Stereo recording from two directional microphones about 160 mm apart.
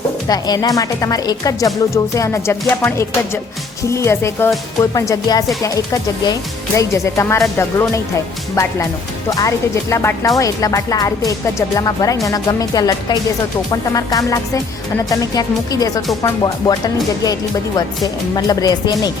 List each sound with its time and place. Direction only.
0.3 s speech: 25° left (ahead or behind)
9.3 s speech: 20° left (ahead or behind)